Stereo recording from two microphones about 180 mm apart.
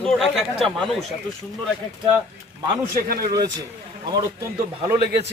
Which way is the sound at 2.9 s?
50° right (ahead or behind).